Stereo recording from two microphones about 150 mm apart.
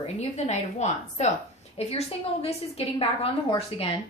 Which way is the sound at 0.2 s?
45° left (ahead or behind).